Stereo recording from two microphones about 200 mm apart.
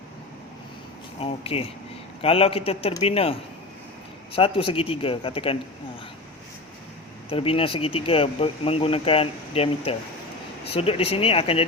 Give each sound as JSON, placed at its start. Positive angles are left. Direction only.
{"t": 1.2, "sound": "speech", "side_deg": 30}
{"t": 7.3, "sound": "speech", "side_deg": 30}